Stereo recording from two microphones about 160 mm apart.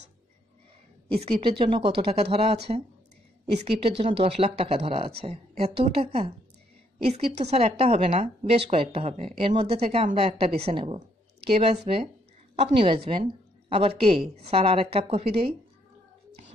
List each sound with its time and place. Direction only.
1.1 s speech: 35° right (ahead or behind)
2.7 s speech: 45° right (ahead or behind)
3.5 s a woman's voice: 35° right (ahead or behind)